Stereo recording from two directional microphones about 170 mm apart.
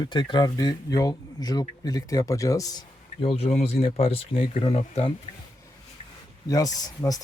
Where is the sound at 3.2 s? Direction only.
35° left (ahead or behind).